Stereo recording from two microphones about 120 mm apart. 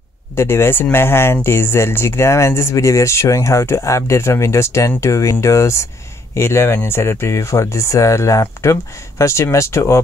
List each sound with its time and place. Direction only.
0.4 s speech: 20° left (ahead or behind)